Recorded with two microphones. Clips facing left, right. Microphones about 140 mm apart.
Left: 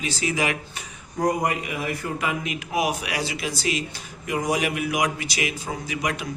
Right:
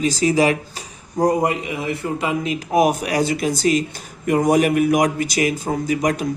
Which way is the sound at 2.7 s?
45° right (ahead or behind).